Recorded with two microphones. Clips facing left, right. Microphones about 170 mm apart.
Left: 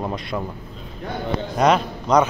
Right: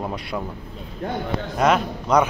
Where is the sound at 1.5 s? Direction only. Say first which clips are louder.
Left 1 dB; 5° right (ahead or behind).